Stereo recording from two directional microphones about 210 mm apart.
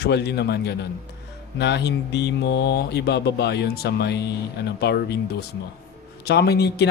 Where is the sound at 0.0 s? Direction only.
50° left (ahead or behind).